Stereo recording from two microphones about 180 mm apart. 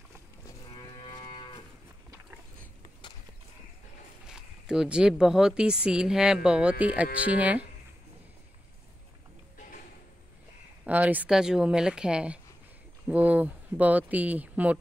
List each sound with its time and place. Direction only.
1.0 s moo: 25° left (ahead or behind)
4.3 s speech: 5° right (ahead or behind)
10.8 s speech: 10° right (ahead or behind)